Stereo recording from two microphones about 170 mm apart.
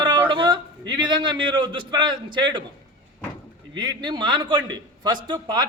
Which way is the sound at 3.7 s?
25° right (ahead or behind).